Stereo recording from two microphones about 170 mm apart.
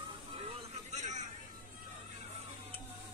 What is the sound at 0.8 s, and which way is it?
Vehicle, 45° right (ahead or behind).